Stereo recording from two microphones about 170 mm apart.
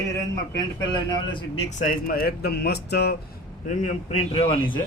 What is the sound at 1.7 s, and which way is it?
Speech, 50° left (ahead or behind).